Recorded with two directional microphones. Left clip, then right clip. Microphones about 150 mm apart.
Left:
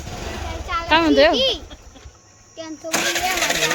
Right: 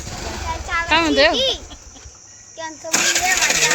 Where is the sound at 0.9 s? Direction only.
30° left (ahead or behind).